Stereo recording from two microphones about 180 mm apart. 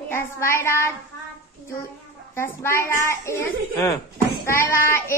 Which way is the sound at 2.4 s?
15° left (ahead or behind).